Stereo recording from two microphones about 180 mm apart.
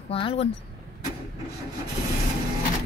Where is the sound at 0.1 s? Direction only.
30° left (ahead or behind).